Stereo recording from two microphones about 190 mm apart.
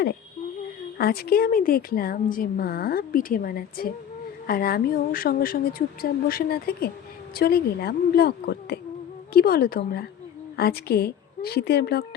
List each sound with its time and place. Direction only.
0.9 s a woman's voice: 55° left (ahead or behind)